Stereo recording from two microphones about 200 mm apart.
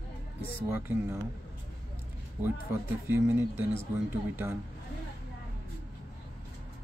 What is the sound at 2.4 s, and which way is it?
Speech, 10° right (ahead or behind).